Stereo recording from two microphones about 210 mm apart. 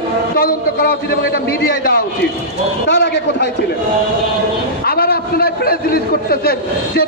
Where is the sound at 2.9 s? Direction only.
55° left (ahead or behind).